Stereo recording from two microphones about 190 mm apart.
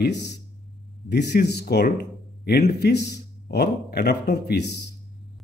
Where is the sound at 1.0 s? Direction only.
60° left (ahead or behind).